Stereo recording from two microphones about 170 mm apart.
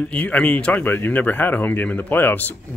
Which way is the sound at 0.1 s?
10° left (ahead or behind).